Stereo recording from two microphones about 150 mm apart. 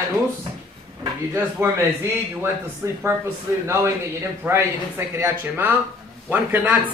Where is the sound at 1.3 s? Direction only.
20° right (ahead or behind).